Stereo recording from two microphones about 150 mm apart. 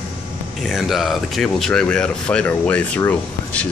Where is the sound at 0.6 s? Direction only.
Centre (ahead or behind).